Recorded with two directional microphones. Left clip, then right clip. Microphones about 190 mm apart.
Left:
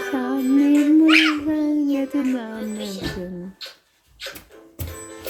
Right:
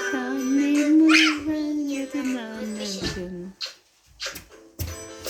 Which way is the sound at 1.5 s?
25° left (ahead or behind).